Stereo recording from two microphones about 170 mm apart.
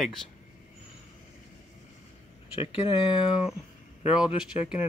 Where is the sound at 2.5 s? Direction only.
30° left (ahead or behind).